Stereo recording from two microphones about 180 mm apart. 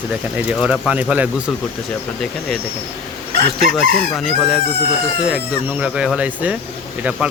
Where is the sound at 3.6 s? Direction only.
Centre (ahead or behind).